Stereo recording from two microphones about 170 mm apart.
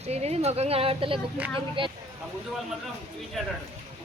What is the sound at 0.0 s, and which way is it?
A woman's voice, 40° right (ahead or behind).